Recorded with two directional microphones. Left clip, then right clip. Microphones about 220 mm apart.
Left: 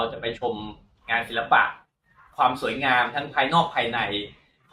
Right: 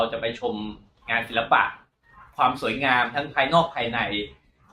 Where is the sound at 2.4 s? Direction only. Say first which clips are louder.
Even; 20° right (ahead or behind).